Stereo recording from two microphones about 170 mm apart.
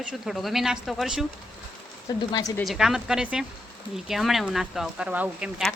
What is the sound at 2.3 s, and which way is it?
Speech, 20° left (ahead or behind).